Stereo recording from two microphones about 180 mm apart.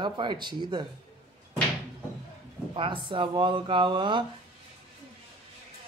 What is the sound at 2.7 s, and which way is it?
Speech, 30° right (ahead or behind).